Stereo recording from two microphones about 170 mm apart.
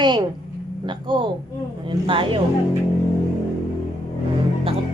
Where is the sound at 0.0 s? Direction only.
25° right (ahead or behind).